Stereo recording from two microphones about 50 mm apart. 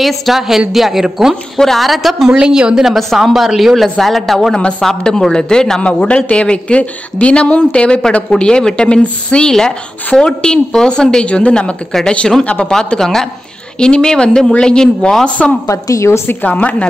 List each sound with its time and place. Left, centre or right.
0.0 s a woman's voice: centre
2.2 s a woman's voice: centre
4.6 s a woman's voice: left
4.8 s a woman's voice: centre
9.5 s a woman's voice: centre
12.7 s a woman's voice: centre; by 15.5 s left
15.6 s a woman's voice: left
16.3 s a woman's voice: left